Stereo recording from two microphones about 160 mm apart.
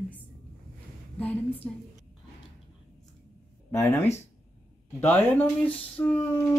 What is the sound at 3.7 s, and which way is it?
A woman's voice, 15° left (ahead or behind).